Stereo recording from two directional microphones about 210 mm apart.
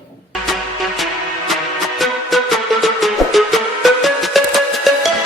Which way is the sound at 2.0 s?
Centre (ahead or behind).